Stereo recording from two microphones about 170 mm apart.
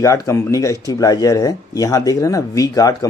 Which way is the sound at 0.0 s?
15° left (ahead or behind).